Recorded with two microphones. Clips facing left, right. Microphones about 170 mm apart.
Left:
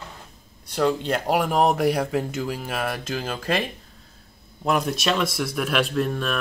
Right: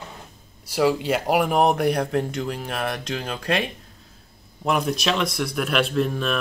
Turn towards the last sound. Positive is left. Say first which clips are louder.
# right 1 dB
turn(degrees=0)  # may be behind; listen again after turning